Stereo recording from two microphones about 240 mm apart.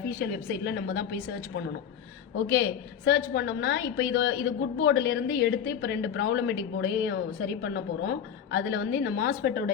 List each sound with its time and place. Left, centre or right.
0.2 s a woman's voice: left
2.5 s a woman's voice: left